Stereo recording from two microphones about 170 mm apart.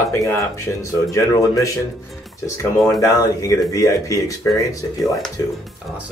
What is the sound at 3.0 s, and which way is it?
A man's voice, 20° left (ahead or behind).